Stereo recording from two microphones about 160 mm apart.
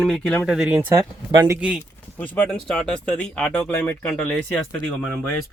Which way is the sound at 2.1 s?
5° left (ahead or behind).